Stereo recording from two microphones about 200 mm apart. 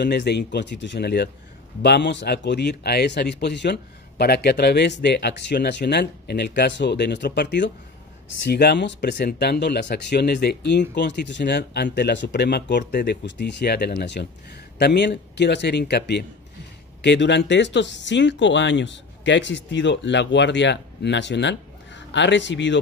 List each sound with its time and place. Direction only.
0.0 s speech: 55° left (ahead or behind)